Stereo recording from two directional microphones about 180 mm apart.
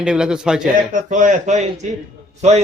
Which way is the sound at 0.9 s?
45° right (ahead or behind).